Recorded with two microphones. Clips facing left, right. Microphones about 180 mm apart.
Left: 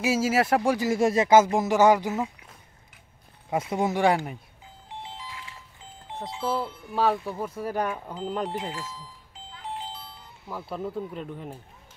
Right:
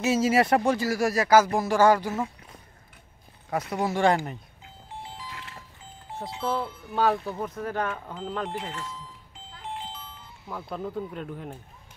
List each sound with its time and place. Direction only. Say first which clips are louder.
0.0 s speech: right 1 dB; 5° left (ahead or behind)
0.7 s speech: left 3 dB; 20° left (ahead or behind)
3.4 s speech: left 2 dB; 20° left (ahead or behind)
5.0 s music: left 1 dB; 25° left (ahead or behind)
5.3 s music: right 1 dB; 60° right (ahead or behind)
6.2 s speech: even; 5° left (ahead or behind)
8.5 s speech: left 1 dB; 35° left (ahead or behind)
9.8 s music: left 1 dB; 40° left (ahead or behind)
10.5 s speech: left 1 dB; 5° left (ahead or behind)